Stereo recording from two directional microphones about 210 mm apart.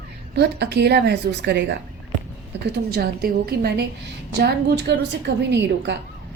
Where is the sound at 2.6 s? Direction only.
50° right (ahead or behind).